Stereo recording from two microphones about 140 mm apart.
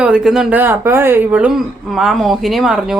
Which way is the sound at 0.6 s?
15° right (ahead or behind).